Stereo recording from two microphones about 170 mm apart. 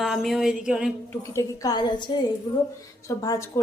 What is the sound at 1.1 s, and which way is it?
A woman's voice, 20° left (ahead or behind).